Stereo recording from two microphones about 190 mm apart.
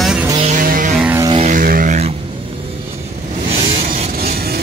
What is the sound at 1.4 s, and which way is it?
Vehicle, 45° right (ahead or behind).